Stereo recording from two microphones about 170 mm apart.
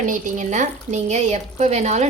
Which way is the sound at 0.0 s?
50° right (ahead or behind).